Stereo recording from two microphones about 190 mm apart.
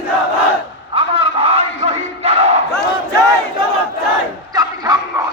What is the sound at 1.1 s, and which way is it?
Battle cry, 30° right (ahead or behind).